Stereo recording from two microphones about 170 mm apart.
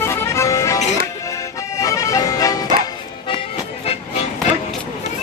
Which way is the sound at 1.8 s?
20° left (ahead or behind).